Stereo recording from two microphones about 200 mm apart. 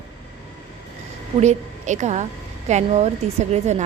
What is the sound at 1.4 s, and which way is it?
A woman's voice, 35° right (ahead or behind).